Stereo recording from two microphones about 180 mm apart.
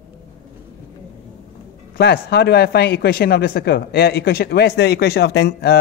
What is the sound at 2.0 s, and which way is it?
Speech, 65° left (ahead or behind).